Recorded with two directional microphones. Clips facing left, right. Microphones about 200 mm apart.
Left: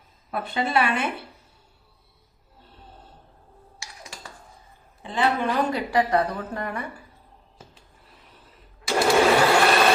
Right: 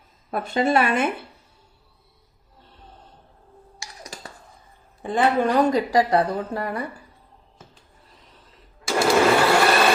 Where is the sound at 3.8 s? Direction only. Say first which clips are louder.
Right 4 dB; 40° right (ahead or behind).